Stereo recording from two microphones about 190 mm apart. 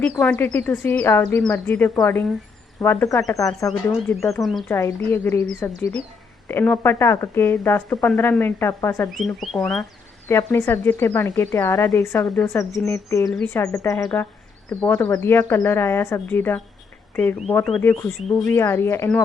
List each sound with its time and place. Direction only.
0.0 s speech: 5° left (ahead or behind)
9.1 s speech: centre (ahead or behind)
10.2 s speech: 10° left (ahead or behind)